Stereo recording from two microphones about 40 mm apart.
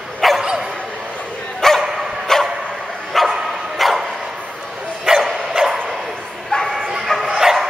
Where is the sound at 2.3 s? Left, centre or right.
Centre.